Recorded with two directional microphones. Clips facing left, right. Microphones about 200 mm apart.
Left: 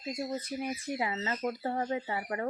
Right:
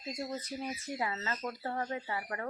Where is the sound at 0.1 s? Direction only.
10° left (ahead or behind).